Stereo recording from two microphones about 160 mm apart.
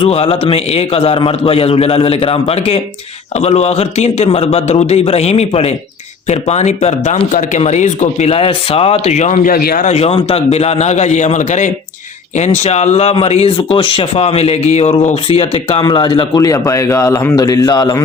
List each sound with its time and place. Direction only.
0.0 s speech: 40° left (ahead or behind); by 9.9 s 60° left (ahead or behind)
9.9 s speech: 40° left (ahead or behind); by 18.0 s 25° left (ahead or behind)